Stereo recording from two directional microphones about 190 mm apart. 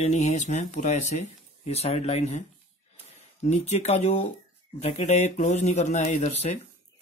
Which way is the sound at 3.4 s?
35° left (ahead or behind).